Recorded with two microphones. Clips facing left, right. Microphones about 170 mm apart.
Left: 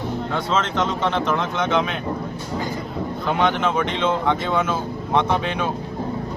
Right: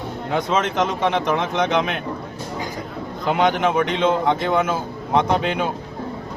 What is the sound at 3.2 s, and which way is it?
Speech, 15° right (ahead or behind).